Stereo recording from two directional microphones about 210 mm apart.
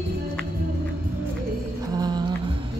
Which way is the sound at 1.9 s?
20° right (ahead or behind).